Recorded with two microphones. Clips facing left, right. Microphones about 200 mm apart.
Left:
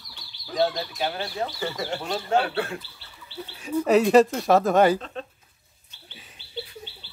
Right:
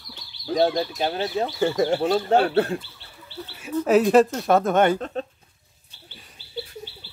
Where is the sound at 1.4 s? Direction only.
50° right (ahead or behind).